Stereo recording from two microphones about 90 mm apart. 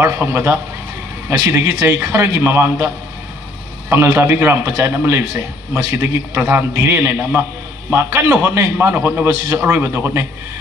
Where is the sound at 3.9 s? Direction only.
25° right (ahead or behind).